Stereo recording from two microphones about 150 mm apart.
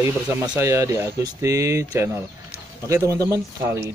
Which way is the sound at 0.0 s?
15° right (ahead or behind).